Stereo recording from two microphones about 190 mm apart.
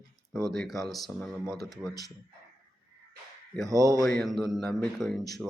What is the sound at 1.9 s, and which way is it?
Speech, 20° left (ahead or behind).